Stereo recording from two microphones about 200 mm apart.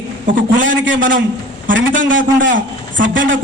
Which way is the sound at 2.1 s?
70° right (ahead or behind).